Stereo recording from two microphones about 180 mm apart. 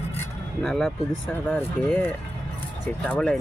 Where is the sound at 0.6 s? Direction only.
Centre (ahead or behind).